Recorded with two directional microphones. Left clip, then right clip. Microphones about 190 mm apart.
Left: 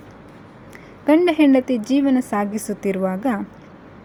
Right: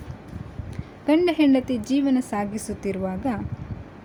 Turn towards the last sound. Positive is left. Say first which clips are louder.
# left 6 dB
turn(degrees=15)  # may be behind; listen again after turning